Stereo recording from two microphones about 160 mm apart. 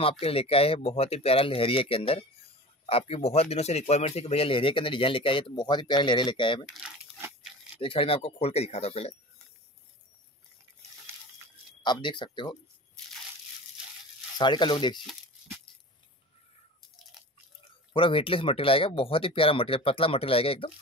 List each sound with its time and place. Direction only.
0.2 s speech: 35° left (ahead or behind)
6.8 s a sound: 5° right (ahead or behind)
7.8 s speech: 35° left (ahead or behind)
11.8 s speech: 30° left (ahead or behind)
14.4 s speech: 30° left (ahead or behind)
15.0 s tearing: centre (ahead or behind)
17.9 s speech: 35° left (ahead or behind)